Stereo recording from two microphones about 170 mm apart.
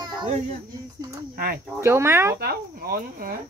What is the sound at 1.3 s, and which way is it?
Speech, 65° right (ahead or behind).